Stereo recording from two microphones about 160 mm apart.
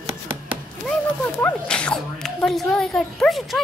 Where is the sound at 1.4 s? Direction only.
5° left (ahead or behind).